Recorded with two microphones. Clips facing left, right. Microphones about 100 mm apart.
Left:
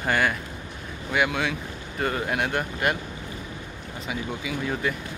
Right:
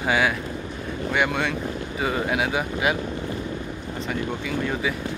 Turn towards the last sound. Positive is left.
turn(degrees=5)  # may be behind; listen again after turning